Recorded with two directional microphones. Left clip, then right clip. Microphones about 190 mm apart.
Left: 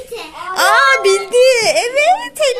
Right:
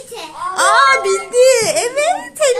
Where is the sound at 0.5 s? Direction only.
10° left (ahead or behind).